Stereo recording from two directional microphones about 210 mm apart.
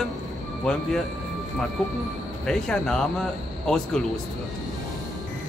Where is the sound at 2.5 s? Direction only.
5° left (ahead or behind).